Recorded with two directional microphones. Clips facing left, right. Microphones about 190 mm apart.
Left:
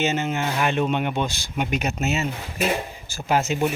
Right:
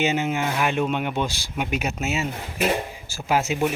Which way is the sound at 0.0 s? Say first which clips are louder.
Right 1 dB; 10° right (ahead or behind).